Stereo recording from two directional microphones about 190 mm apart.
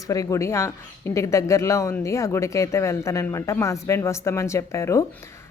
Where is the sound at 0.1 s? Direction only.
15° left (ahead or behind).